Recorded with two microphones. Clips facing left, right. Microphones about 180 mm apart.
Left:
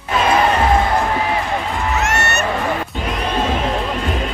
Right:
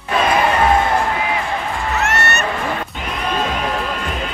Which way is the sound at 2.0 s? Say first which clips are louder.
Right 2 dB; 60° right (ahead or behind).